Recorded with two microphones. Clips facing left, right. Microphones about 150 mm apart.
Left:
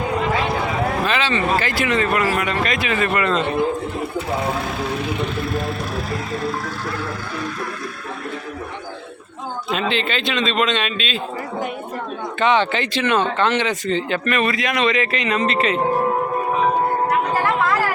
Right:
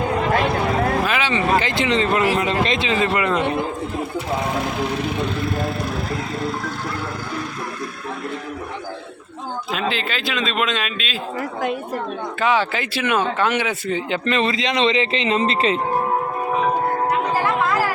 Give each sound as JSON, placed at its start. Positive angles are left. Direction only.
{"t": 1.0, "sound": "speech", "side_deg": -10}
{"t": 9.6, "sound": "a man's voice", "side_deg": 0}
{"t": 12.4, "sound": "speech", "side_deg": -5}